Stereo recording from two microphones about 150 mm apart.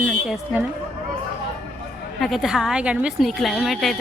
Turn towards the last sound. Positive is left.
turn(degrees=0)  # may be behind; listen again after turning